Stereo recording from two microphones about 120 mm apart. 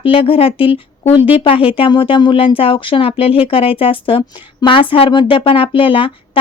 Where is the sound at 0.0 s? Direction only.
50° left (ahead or behind).